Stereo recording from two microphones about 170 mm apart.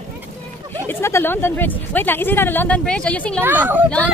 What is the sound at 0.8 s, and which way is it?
Speech, 15° left (ahead or behind).